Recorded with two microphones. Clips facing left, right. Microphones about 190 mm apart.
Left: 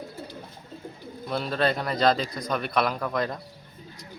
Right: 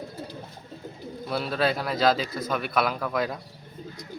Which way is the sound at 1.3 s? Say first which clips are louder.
Even; 5° right (ahead or behind).